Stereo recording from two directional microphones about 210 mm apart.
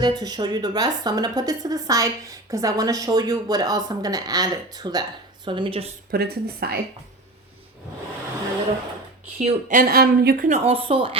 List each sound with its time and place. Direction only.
0.0 s a woman's voice: 20° right (ahead or behind)
6.1 s speech: 45° right (ahead or behind)
9.4 s speech: 40° right (ahead or behind)